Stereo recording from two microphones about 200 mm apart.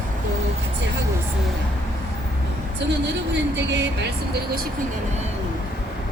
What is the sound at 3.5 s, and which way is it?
Speech, 60° right (ahead or behind).